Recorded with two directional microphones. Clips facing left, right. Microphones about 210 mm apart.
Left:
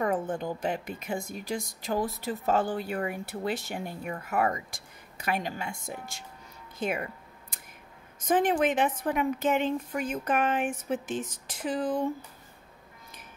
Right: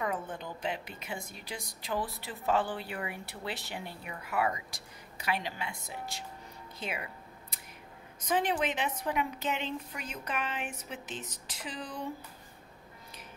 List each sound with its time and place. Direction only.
0.0 s speech: 45° left (ahead or behind)
6.8 s a sound: 50° left (ahead or behind)
8.3 s speech: 50° left (ahead or behind)